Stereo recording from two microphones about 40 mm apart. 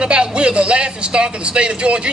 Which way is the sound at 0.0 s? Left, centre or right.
Right.